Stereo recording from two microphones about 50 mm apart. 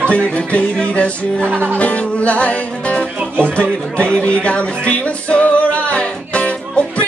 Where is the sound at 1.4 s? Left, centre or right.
Right.